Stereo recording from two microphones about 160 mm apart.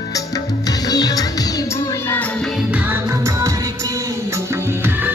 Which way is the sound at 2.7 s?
10° right (ahead or behind).